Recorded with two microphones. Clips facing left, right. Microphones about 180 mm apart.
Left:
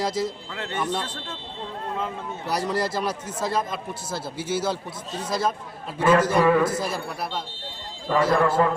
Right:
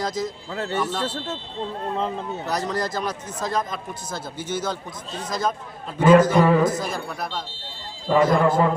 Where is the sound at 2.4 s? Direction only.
10° left (ahead or behind).